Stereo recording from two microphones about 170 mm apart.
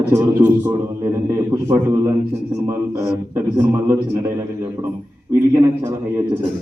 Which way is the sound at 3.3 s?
15° right (ahead or behind).